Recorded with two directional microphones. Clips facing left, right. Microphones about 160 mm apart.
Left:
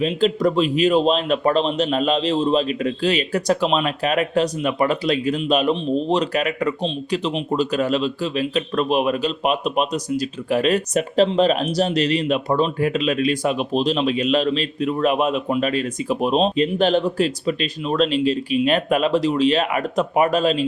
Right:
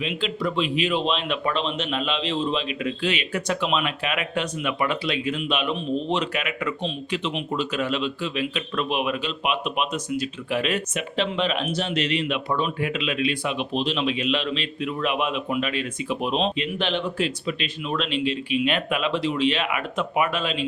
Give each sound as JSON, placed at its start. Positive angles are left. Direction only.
{"t": 0.0, "sound": "speech", "side_deg": 40}